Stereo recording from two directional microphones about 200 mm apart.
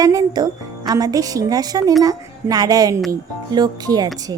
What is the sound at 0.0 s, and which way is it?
A child's voice, 20° right (ahead or behind).